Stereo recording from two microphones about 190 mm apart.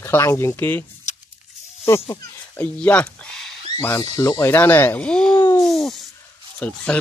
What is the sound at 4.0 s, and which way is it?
Speech, 20° left (ahead or behind).